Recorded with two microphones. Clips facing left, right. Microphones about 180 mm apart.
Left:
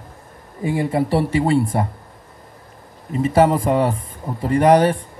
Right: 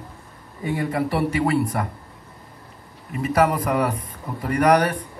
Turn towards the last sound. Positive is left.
turn(degrees=25)  # may be behind; listen again after turning